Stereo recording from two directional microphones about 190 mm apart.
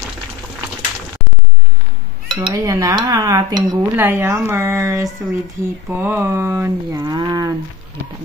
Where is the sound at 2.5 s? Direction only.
20° right (ahead or behind).